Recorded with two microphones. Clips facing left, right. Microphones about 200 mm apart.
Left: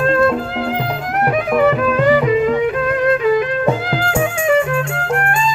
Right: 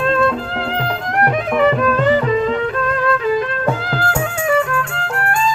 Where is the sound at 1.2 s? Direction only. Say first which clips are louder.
Left 1 dB; 5° left (ahead or behind).